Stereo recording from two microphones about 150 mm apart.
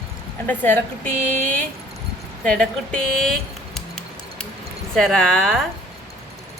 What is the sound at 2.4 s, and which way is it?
Music, 5° left (ahead or behind).